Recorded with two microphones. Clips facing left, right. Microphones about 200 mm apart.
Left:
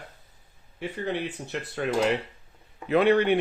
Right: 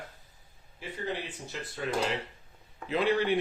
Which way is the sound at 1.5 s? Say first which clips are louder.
Left 4 dB; 65° left (ahead or behind).